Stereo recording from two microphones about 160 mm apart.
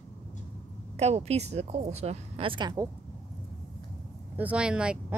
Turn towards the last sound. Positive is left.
turn(degrees=-5)  # may be behind; listen again after turning